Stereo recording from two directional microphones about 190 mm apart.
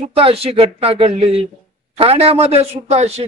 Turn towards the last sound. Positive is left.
turn(degrees=-35)  # may be behind; listen again after turning